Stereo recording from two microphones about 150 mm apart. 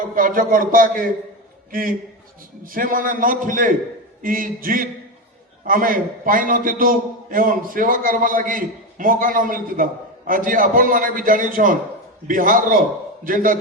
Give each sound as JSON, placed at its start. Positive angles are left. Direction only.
{"t": 0.2, "sound": "a man's voice", "side_deg": -65}